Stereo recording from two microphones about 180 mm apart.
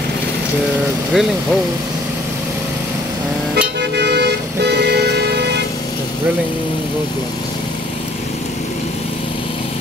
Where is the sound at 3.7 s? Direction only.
70° right (ahead or behind).